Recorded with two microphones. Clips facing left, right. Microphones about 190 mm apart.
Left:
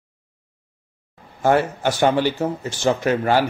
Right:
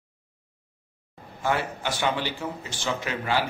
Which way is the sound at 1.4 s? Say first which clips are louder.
Left 9 dB; 45° left (ahead or behind).